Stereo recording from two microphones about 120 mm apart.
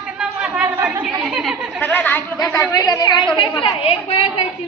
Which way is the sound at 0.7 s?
25° right (ahead or behind).